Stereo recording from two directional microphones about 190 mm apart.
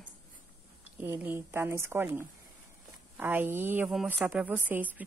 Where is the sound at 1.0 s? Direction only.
10° right (ahead or behind).